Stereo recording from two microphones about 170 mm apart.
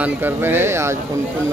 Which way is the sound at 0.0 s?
10° right (ahead or behind).